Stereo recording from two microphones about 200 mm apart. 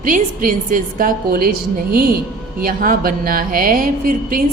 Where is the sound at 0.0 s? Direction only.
45° right (ahead or behind).